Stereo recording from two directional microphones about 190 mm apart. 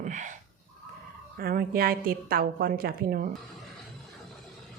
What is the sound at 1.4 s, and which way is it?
A woman's voice, 50° right (ahead or behind).